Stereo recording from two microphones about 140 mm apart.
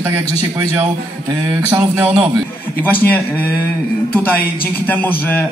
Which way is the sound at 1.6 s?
20° right (ahead or behind).